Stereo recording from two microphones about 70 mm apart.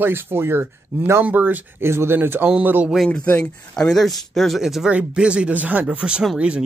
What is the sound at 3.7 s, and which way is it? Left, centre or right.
Speech, centre.